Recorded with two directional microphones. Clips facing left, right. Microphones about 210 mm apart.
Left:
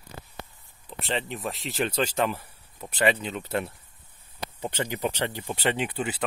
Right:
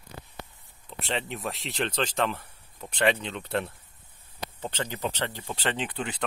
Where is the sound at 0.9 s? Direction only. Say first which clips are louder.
Left 1 dB; centre (ahead or behind).